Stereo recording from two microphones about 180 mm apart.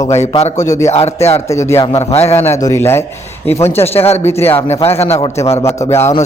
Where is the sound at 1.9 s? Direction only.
35° left (ahead or behind).